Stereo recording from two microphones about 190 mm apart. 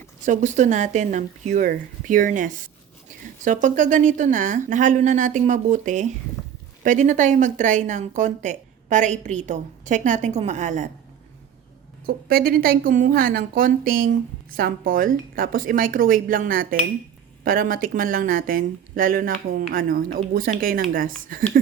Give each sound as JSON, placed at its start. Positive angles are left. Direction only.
{"t": 0.3, "sound": "speech", "side_deg": -40}
{"t": 12.0, "sound": "a woman's voice", "side_deg": -50}